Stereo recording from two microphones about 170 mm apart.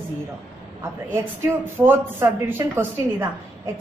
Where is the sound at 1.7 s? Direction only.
15° right (ahead or behind).